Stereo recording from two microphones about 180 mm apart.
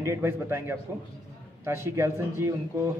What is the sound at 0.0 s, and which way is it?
A man's voice, 15° right (ahead or behind).